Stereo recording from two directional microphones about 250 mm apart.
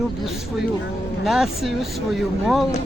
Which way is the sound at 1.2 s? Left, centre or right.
Centre.